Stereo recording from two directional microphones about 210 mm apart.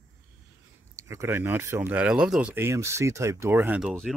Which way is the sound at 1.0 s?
10° right (ahead or behind).